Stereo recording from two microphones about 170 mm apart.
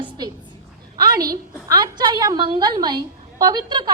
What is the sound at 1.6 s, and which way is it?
A woman's voice, 25° right (ahead or behind).